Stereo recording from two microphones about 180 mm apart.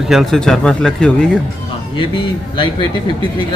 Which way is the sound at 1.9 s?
25° left (ahead or behind).